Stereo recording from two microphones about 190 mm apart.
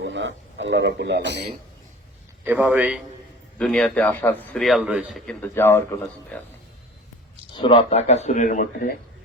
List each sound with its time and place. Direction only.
0.0 s a man's voice: 70° right (ahead or behind)
2.4 s a man's voice: 10° right (ahead or behind)
3.6 s a man's voice: 5° left (ahead or behind)
7.5 s speech: 25° left (ahead or behind); by 9.0 s 45° left (ahead or behind)